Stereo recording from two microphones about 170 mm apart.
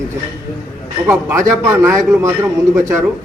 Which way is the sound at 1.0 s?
15° right (ahead or behind).